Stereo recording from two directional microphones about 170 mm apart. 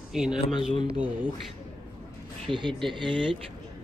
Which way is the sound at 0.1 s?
5° right (ahead or behind).